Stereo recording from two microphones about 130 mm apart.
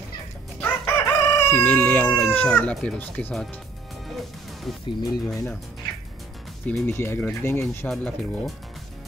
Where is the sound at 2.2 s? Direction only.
10° left (ahead or behind).